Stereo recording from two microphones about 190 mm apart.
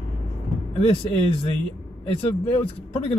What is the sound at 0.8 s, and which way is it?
Speech, 30° left (ahead or behind).